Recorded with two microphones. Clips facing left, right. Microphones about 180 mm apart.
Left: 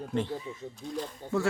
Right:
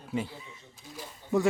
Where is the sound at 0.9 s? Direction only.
15° right (ahead or behind).